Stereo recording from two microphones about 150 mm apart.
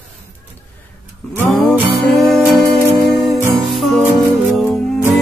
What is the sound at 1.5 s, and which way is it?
Music, centre (ahead or behind).